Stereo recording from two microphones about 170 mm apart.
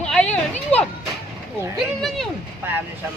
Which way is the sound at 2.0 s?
Centre (ahead or behind).